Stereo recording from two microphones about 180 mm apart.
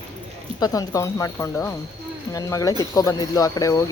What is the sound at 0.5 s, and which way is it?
Speech, 20° left (ahead or behind).